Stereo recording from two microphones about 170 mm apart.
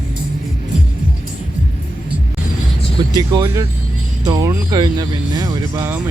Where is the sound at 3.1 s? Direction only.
25° right (ahead or behind).